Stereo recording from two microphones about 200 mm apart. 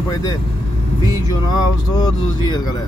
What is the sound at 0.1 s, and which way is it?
Speech, 20° left (ahead or behind).